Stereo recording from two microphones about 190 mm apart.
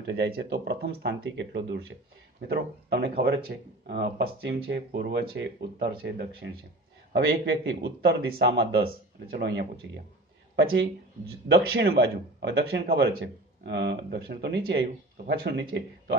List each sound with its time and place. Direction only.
0.0 s speech: 60° right (ahead or behind)